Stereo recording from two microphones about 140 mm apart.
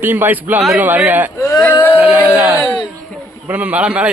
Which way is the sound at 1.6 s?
15° left (ahead or behind).